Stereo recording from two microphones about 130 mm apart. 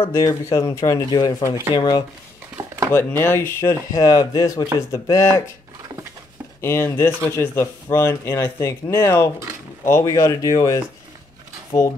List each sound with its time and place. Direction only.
0.1 s speech: 25° left (ahead or behind)
2.5 s a sound: 25° right (ahead or behind)
2.9 s speech: 20° left (ahead or behind)
6.6 s speech: 20° left (ahead or behind)